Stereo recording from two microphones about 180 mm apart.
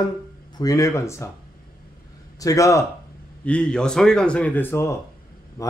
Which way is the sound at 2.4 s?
20° left (ahead or behind).